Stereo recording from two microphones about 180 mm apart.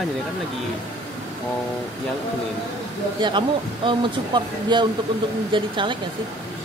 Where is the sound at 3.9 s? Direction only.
25° right (ahead or behind).